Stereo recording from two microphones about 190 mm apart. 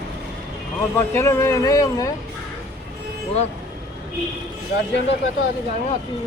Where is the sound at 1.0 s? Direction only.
10° left (ahead or behind).